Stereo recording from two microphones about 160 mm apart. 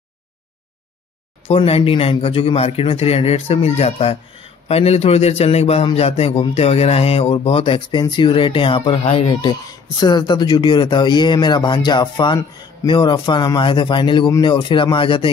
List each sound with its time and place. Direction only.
1.5 s speech: 35° left (ahead or behind)